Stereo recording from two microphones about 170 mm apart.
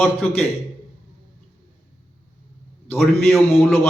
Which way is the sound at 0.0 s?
10° left (ahead or behind).